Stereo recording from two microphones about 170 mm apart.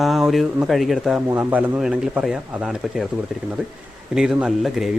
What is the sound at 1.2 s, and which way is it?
Speech, 15° right (ahead or behind).